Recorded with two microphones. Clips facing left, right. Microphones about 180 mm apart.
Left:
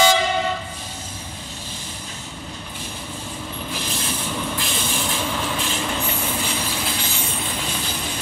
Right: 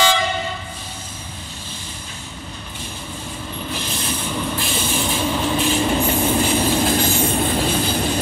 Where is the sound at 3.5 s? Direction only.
5° left (ahead or behind); by 5.4 s 10° right (ahead or behind).